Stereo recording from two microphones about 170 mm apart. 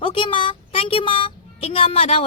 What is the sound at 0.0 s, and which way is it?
Speech, 30° left (ahead or behind).